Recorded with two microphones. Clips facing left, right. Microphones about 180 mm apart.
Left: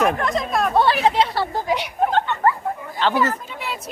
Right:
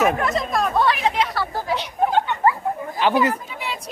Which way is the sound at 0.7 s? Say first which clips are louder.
Left 4 dB; 30° left (ahead or behind).